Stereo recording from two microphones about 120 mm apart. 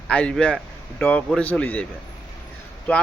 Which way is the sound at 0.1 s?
10° left (ahead or behind).